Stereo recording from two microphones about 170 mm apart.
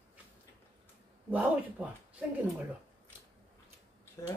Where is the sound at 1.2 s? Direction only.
10° right (ahead or behind).